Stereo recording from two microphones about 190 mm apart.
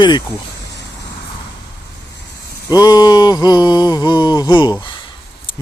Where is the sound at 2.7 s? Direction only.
20° left (ahead or behind).